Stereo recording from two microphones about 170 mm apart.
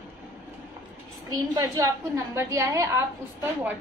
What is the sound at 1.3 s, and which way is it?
A woman's voice, 20° right (ahead or behind).